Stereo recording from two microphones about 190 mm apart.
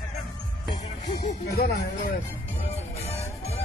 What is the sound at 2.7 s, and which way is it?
Music, 35° left (ahead or behind).